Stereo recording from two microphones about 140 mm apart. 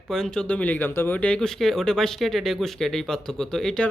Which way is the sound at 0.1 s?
5° left (ahead or behind).